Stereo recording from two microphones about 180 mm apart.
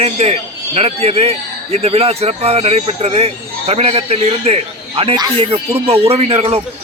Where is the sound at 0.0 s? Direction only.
35° right (ahead or behind).